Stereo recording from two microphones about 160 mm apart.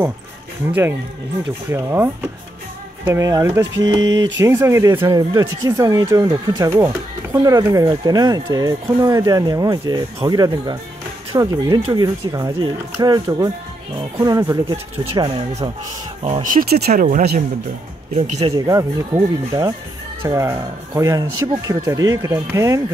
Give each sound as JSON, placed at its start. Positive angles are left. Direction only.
{"t": 1.7, "sound": "speech", "side_deg": -15}
{"t": 3.1, "sound": "speech", "side_deg": -20}
{"t": 16.2, "sound": "speech", "side_deg": -40}
{"t": 16.4, "sound": "speech", "side_deg": -70}
{"t": 16.9, "sound": "speech", "side_deg": -55}
{"t": 18.7, "sound": "speech", "side_deg": -20}